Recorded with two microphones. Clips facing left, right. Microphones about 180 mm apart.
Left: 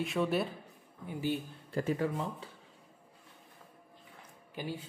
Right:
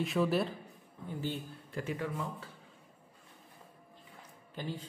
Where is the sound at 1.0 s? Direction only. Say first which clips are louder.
Left 4 dB; 15° left (ahead or behind).